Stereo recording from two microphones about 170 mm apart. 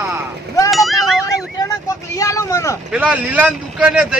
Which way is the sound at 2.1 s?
20° left (ahead or behind).